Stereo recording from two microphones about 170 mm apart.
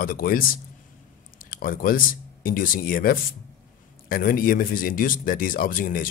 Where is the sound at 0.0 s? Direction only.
60° left (ahead or behind).